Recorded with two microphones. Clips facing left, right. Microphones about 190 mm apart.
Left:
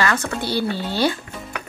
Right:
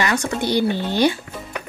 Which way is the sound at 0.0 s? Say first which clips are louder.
Right 1 dB; 15° right (ahead or behind).